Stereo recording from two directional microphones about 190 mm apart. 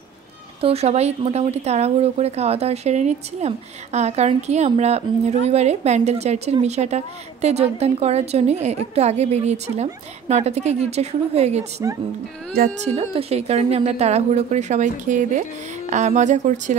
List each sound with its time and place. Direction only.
0.6 s speech: 30° right (ahead or behind)